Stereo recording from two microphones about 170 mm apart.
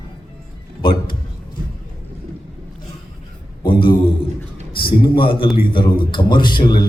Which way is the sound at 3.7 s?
30° left (ahead or behind).